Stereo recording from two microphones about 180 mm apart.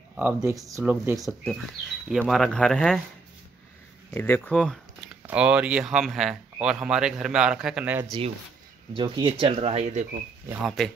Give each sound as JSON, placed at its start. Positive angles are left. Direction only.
{"t": 0.1, "sound": "speech", "side_deg": -10}
{"t": 1.1, "sound": "speech", "side_deg": 0}
{"t": 4.1, "sound": "speech", "side_deg": 10}
{"t": 5.2, "sound": "speech", "side_deg": -5}
{"t": 8.9, "sound": "speech", "side_deg": -25}
{"t": 10.8, "sound": "speech", "side_deg": 0}